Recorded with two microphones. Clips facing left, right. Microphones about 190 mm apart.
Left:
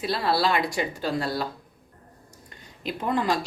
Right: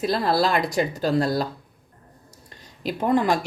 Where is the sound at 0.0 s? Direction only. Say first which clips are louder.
Right 3 dB; 45° right (ahead or behind).